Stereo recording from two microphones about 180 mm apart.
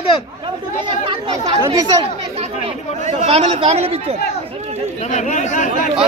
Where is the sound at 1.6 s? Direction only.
20° right (ahead or behind).